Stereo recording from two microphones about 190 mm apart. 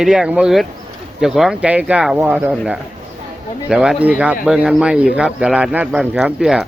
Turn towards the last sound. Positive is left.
turn(degrees=0)  # may be behind; listen again after turning